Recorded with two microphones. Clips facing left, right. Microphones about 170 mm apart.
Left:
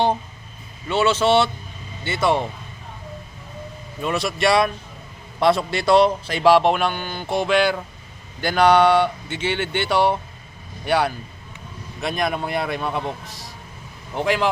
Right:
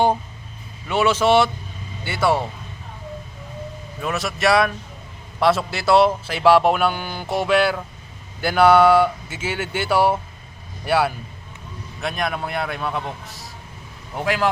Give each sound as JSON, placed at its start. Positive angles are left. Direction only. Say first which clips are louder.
{"t": 0.9, "sound": "speech", "louder": "right 1 dB", "side_deg": -10}
{"t": 4.0, "sound": "speech", "louder": "left 1 dB", "side_deg": 0}